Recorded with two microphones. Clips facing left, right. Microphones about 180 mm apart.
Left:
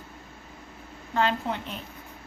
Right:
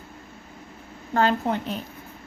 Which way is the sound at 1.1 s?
40° right (ahead or behind).